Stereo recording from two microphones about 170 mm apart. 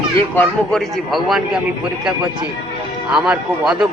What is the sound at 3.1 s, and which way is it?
Speech, 5° right (ahead or behind).